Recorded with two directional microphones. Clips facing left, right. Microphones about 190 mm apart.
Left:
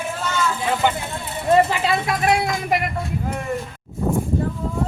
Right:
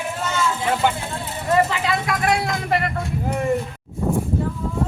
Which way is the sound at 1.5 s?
25° left (ahead or behind).